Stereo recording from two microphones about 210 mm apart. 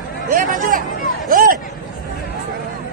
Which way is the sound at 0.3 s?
40° right (ahead or behind).